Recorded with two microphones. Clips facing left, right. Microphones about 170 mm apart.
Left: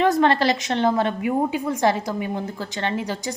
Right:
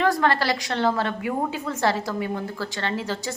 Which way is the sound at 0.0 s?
20° left (ahead or behind).